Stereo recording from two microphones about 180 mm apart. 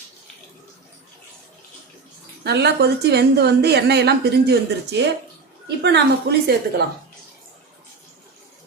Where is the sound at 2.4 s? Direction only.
65° right (ahead or behind).